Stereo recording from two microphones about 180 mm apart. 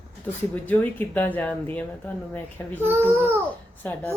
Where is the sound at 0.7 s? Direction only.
10° left (ahead or behind).